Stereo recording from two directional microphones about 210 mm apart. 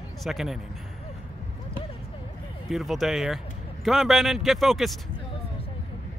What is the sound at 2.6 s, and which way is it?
Speech, centre (ahead or behind).